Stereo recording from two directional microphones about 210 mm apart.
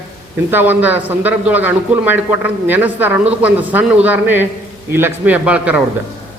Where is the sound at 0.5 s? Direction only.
10° right (ahead or behind).